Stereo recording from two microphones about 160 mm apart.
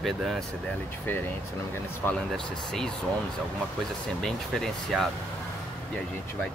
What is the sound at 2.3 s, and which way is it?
Speech, centre (ahead or behind).